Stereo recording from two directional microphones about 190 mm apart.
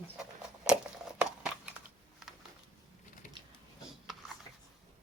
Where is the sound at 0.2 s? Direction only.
5° right (ahead or behind).